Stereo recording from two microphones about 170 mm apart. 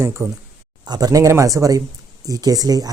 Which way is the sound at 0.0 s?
15° right (ahead or behind).